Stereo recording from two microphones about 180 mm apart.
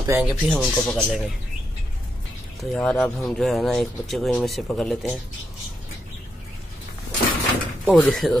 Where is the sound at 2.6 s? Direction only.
5° left (ahead or behind).